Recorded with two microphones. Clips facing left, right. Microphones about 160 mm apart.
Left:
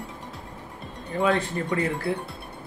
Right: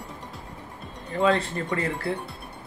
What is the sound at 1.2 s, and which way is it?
Speech, 15° left (ahead or behind).